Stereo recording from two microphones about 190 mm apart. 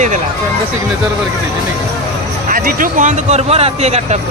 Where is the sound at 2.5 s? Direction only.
45° right (ahead or behind).